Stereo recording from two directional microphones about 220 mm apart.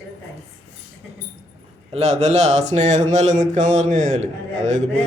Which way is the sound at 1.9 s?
30° right (ahead or behind).